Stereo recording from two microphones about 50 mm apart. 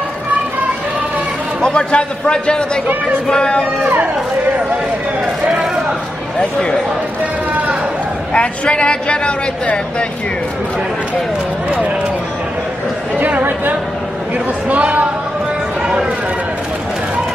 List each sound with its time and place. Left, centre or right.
1.6 s a man's voice: centre
3.8 s speech: right
8.3 s speech: left
13.2 s speech: right